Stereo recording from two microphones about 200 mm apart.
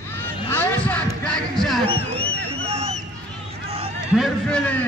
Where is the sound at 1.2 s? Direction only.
5° left (ahead or behind).